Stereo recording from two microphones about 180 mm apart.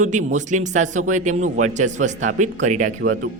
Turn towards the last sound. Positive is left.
turn(degrees=-45)  # may be behind; listen again after turning